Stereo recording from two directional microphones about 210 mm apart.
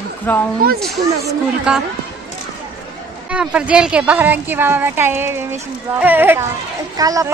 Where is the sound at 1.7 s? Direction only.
5° right (ahead or behind).